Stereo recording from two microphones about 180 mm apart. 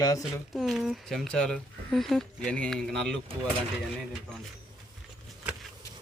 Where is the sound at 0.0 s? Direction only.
20° left (ahead or behind).